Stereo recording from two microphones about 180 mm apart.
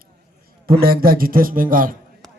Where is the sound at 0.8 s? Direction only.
55° right (ahead or behind).